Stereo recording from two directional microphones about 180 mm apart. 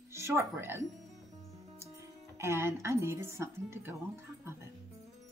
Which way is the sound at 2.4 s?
15° right (ahead or behind).